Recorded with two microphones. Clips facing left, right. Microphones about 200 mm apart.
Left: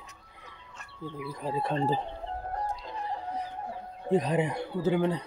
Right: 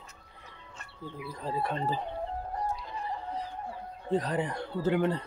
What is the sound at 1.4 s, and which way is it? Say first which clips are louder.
Speech: left 1 dB; 20° left (ahead or behind).